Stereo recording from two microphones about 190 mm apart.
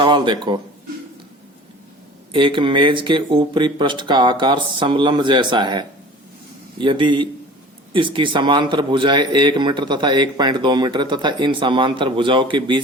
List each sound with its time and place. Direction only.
0.0 s speech: 25° right (ahead or behind)
2.3 s speech: 25° right (ahead or behind)